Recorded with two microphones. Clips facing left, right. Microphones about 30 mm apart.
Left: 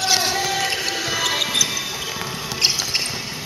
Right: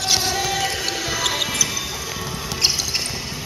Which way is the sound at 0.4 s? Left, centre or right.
Centre.